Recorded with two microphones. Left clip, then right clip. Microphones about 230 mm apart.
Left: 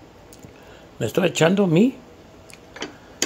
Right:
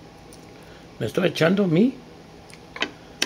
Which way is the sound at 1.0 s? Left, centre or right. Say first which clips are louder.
Left 2 dB; centre.